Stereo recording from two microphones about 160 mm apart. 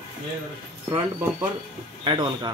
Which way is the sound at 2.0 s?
30° right (ahead or behind).